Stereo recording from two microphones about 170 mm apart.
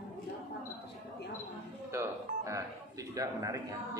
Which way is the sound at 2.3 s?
50° right (ahead or behind).